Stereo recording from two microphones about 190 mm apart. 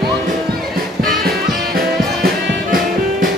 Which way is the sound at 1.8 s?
50° right (ahead or behind).